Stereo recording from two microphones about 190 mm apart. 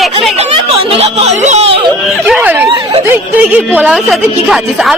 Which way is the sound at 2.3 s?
10° right (ahead or behind).